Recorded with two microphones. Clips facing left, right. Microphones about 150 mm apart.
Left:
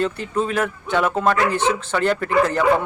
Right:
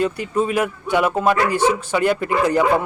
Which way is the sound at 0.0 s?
10° right (ahead or behind).